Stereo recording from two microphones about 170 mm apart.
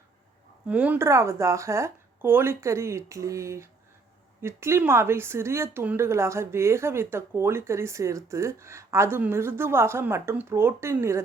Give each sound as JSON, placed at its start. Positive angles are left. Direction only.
{"t": 0.7, "sound": "a woman's voice", "side_deg": -10}